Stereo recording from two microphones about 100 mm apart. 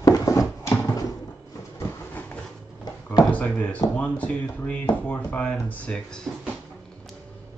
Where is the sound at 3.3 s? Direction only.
15° left (ahead or behind).